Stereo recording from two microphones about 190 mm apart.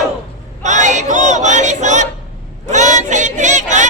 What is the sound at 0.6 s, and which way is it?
Choir, 40° right (ahead or behind).